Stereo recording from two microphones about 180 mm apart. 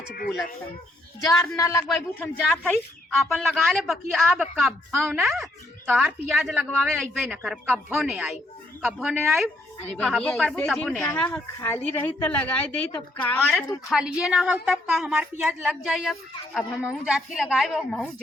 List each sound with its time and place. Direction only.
0.1 s speech: 55° left (ahead or behind)
1.2 s a man's voice: 20° left (ahead or behind)
2.2 s a woman's voice: 5° left (ahead or behind)
13.9 s a woman's voice: 5° right (ahead or behind)